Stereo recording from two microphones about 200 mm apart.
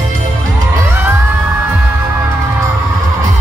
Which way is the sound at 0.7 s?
10° right (ahead or behind).